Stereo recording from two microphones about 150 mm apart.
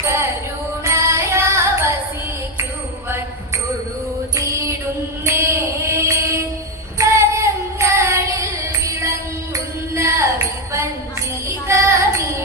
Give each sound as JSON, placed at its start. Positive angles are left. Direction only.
{"t": 0.0, "sound": "music", "side_deg": -20}
{"t": 4.4, "sound": "music", "side_deg": -20}
{"t": 5.2, "sound": "mantra", "side_deg": -20}
{"t": 7.0, "sound": "female singing", "side_deg": -20}
{"t": 9.9, "sound": "a sound", "side_deg": -20}
{"t": 11.4, "sound": "child singing", "side_deg": -20}